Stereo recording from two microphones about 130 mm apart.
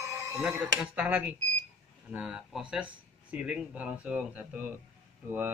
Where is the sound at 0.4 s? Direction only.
5° right (ahead or behind).